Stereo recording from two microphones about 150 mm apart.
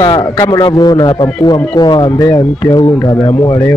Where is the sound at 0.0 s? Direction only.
30° left (ahead or behind).